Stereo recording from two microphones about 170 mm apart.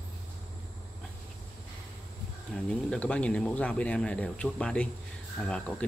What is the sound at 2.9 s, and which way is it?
Speech, 5° left (ahead or behind).